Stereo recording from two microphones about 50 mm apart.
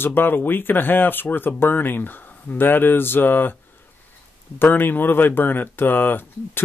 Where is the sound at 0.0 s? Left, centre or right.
Left.